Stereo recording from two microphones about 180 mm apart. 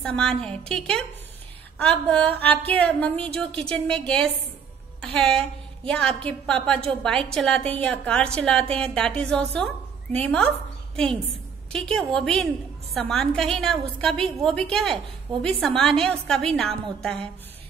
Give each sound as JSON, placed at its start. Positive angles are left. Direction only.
{"t": 0.0, "sound": "a woman's voice", "side_deg": 5}
{"t": 11.7, "sound": "a woman's voice", "side_deg": 5}